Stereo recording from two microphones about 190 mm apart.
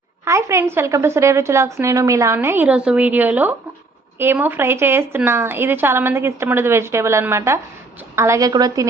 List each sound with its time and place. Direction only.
0.3 s speech: 15° right (ahead or behind)